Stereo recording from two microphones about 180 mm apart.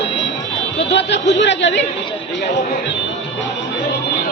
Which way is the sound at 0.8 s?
75° left (ahead or behind).